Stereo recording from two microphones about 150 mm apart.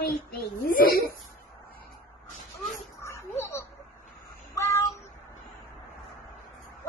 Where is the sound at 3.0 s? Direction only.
20° left (ahead or behind).